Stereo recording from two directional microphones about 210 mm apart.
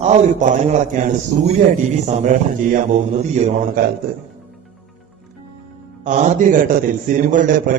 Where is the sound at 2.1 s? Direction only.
35° right (ahead or behind).